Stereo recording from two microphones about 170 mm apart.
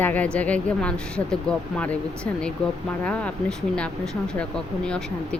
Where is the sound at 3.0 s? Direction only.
5° left (ahead or behind).